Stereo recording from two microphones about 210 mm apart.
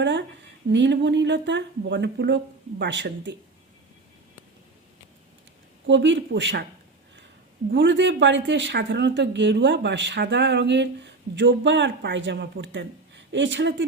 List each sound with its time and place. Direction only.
0.0 s speech: 60° right (ahead or behind)
5.9 s speech: 60° right (ahead or behind)
7.7 s speech: 60° right (ahead or behind)